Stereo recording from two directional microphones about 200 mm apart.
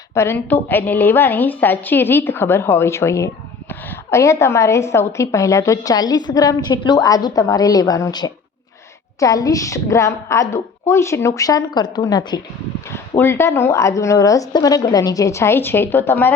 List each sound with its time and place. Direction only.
0.1 s a woman's voice: 15° left (ahead or behind)